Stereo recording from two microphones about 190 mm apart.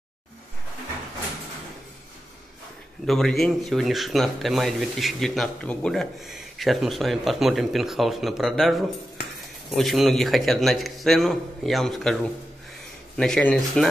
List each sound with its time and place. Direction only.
3.1 s speech: centre (ahead or behind)
13.2 s speech: 5° left (ahead or behind)